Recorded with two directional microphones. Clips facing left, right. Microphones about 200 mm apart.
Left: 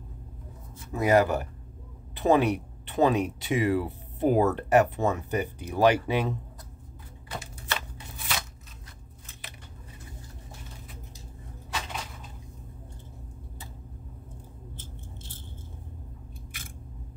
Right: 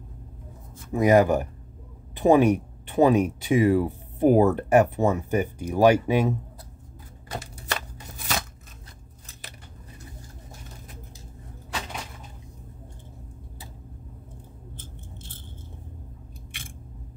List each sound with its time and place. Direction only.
0.9 s speech: 15° right (ahead or behind)
7.2 s typewriter: 40° right (ahead or behind)